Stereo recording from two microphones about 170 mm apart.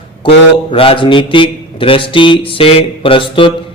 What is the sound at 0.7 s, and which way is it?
A man's voice, 35° left (ahead or behind).